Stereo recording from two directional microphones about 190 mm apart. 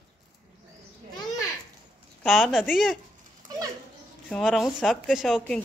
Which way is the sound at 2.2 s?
Centre (ahead or behind).